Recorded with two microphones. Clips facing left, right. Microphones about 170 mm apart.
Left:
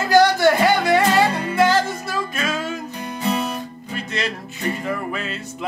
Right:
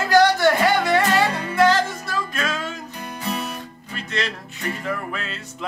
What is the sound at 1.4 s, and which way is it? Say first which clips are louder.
Music: even; 25° left (ahead or behind).